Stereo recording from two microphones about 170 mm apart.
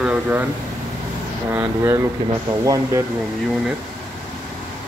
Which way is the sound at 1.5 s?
10° right (ahead or behind).